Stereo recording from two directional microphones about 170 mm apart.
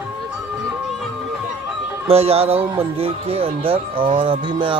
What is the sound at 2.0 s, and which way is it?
Speech, 35° right (ahead or behind).